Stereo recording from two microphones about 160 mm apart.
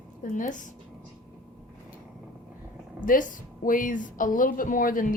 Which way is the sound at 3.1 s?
60° left (ahead or behind).